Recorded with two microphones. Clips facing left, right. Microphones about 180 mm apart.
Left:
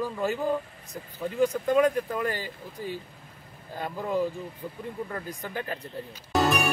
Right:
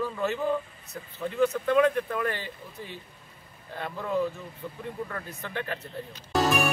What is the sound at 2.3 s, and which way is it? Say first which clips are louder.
Speech: left 1 dB; 40° left (ahead or behind).